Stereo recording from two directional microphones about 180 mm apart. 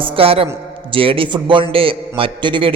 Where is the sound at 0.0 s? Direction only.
30° right (ahead or behind).